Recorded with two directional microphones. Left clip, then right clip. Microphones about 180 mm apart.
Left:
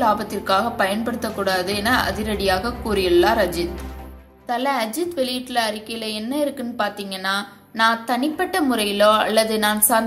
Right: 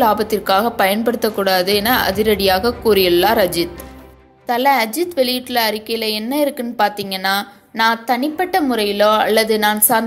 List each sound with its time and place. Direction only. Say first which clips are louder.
0.0 s a woman's voice: right 5 dB; 35° right (ahead or behind)